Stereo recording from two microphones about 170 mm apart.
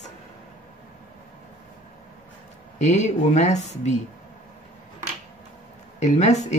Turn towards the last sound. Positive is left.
turn(degrees=40)  # may be behind; listen again after turning